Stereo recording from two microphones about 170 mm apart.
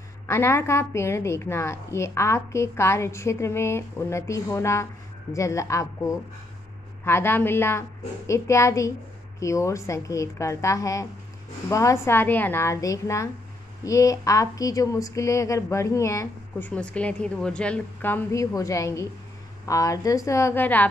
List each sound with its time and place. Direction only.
0.3 s speech: 15° left (ahead or behind)